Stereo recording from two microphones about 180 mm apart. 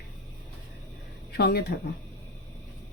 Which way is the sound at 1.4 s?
60° left (ahead or behind).